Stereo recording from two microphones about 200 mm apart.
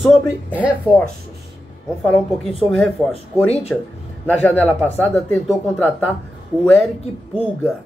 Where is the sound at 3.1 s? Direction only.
30° left (ahead or behind).